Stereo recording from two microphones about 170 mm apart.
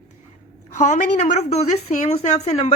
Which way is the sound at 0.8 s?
45° left (ahead or behind).